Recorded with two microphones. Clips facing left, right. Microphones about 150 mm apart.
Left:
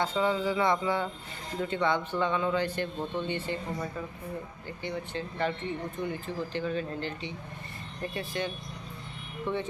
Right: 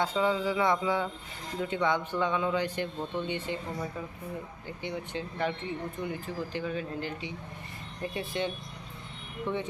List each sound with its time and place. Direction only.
0.0 s speech: 10° right (ahead or behind)
8.1 s speech: 25° right (ahead or behind)
9.5 s speech: 15° right (ahead or behind)